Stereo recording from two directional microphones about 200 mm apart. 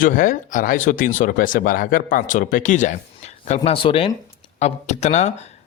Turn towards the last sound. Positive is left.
turn(degrees=35)  # may be behind; listen again after turning